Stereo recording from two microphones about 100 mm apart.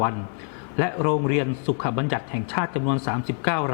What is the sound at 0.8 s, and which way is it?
A man's voice, 20° left (ahead or behind).